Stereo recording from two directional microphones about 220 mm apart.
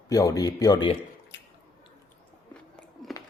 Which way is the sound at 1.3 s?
55° left (ahead or behind).